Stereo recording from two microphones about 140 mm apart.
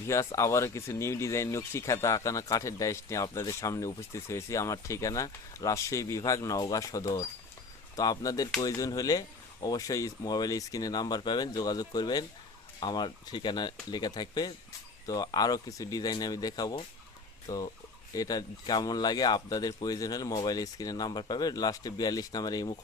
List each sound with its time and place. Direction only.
0.1 s speech: 20° left (ahead or behind)